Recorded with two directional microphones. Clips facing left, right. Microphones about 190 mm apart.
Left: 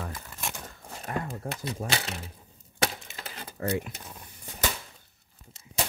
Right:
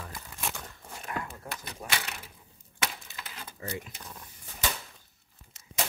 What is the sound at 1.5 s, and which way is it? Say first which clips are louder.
Speech: left 5 dB; 30° left (ahead or behind).